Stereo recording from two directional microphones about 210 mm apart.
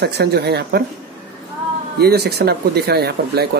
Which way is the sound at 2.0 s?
50° right (ahead or behind).